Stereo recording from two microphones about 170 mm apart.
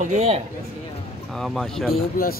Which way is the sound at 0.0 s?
45° right (ahead or behind).